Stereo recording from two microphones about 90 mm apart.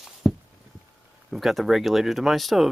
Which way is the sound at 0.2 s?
Centre (ahead or behind).